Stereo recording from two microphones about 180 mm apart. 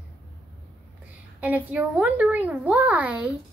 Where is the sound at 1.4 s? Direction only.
10° right (ahead or behind).